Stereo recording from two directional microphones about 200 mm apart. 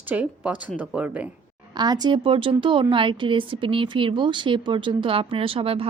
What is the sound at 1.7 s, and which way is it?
Speech, 20° right (ahead or behind).